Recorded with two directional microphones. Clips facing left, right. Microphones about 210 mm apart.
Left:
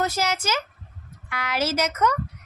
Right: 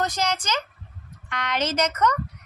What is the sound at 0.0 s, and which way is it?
Child singing, 5° left (ahead or behind).